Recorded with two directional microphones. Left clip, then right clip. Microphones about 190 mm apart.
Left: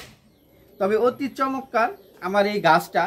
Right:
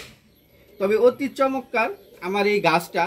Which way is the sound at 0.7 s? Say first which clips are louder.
Right 2 dB; 15° left (ahead or behind).